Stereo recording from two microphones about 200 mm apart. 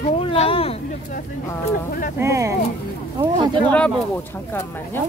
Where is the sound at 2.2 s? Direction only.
15° right (ahead or behind).